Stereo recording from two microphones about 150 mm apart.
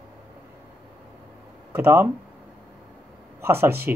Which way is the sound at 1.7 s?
15° right (ahead or behind).